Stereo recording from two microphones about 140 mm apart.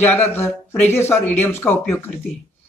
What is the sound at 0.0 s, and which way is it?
Speech, 15° left (ahead or behind).